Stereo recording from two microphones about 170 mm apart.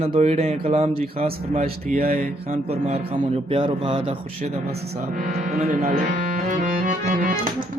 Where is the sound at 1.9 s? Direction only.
60° right (ahead or behind).